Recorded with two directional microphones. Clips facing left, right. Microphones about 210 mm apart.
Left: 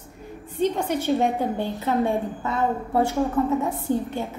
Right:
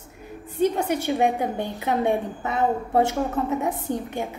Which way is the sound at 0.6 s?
10° right (ahead or behind).